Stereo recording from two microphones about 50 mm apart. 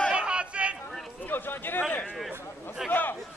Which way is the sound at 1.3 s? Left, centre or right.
Left.